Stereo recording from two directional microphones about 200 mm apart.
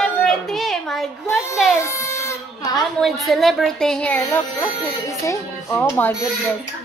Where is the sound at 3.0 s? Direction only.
Centre (ahead or behind).